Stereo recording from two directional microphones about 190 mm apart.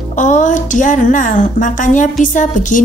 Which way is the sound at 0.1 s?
40° left (ahead or behind).